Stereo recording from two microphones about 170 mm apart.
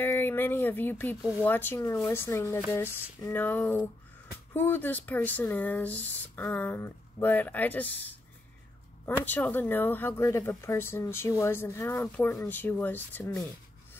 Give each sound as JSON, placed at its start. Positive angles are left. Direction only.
{"t": 0.0, "sound": "speech", "side_deg": 10}
{"t": 9.2, "sound": "speech", "side_deg": 10}